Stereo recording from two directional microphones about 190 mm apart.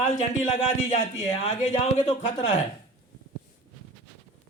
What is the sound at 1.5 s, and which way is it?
Speech, 35° left (ahead or behind).